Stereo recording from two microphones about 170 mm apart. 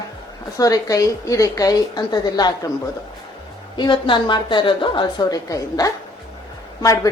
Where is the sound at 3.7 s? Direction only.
25° left (ahead or behind).